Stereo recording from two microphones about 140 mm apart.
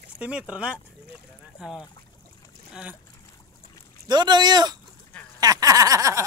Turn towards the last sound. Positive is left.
turn(degrees=-25)  # may be behind; listen again after turning